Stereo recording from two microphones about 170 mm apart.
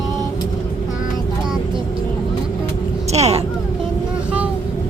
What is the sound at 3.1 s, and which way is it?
Vehicle, 40° right (ahead or behind).